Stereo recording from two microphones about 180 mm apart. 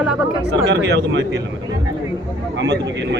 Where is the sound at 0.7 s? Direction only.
70° right (ahead or behind).